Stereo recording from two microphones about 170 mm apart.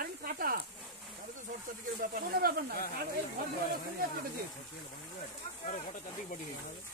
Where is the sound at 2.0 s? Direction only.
60° right (ahead or behind).